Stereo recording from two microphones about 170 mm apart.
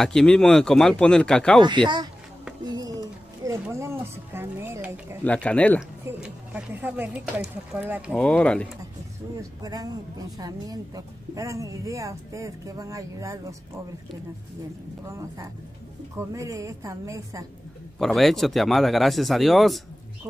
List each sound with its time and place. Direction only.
0.0 s speech: 5° left (ahead or behind)
1.6 s speech: 25° right (ahead or behind)
2.6 s a sound: 20° right (ahead or behind)
3.7 s speech: 15° right (ahead or behind)
5.2 s speech: 5° left (ahead or behind)
6.0 s a sound: 10° right (ahead or behind)
7.7 s speech: 5° right (ahead or behind)
8.2 s speech: 5° left (ahead or behind)
9.4 s speech: 20° right (ahead or behind)
15.0 s speech: 15° right (ahead or behind)
17.9 s speech: centre (ahead or behind)